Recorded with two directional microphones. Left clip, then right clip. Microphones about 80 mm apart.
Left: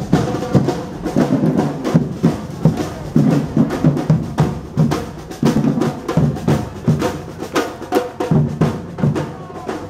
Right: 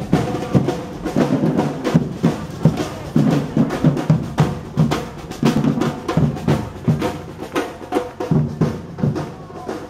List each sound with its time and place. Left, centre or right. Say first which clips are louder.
0.1 s music: left 2 dB; centre
6.1 s music: left 2 dB; centre
7.0 s music: left 3 dB; left